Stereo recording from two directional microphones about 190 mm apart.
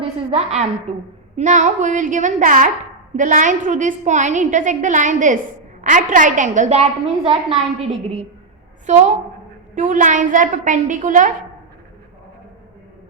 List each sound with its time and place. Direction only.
0.3 s a woman's voice: 30° right (ahead or behind)